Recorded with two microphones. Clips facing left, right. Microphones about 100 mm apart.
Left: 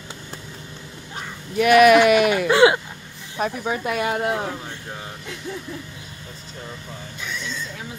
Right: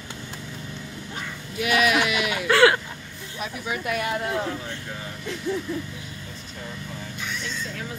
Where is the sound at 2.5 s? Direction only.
20° left (ahead or behind).